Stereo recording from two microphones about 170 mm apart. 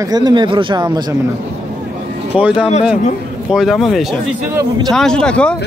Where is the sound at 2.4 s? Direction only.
10° right (ahead or behind).